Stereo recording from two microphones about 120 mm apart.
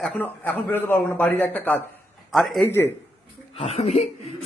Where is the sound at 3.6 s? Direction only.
60° left (ahead or behind).